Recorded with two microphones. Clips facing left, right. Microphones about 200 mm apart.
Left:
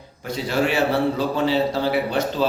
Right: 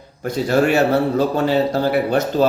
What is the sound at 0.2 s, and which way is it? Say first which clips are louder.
A man's voice: right 5 dB; 45° right (ahead or behind).